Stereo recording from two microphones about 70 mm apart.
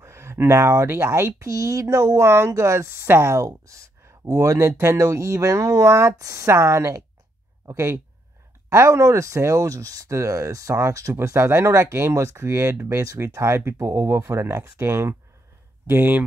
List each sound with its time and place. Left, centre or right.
0.0 s a sound: right
0.9 s speech: right
11.1 s speech: right